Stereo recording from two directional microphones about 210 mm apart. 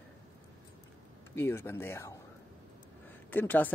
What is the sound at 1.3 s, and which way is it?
Speech, 10° left (ahead or behind).